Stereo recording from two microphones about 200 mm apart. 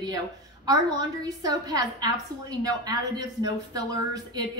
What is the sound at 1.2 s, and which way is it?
A woman's voice, 20° right (ahead or behind).